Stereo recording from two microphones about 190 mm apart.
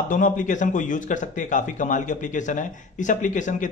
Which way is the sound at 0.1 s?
45° left (ahead or behind).